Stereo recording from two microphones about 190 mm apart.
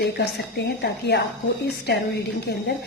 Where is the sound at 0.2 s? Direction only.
65° left (ahead or behind).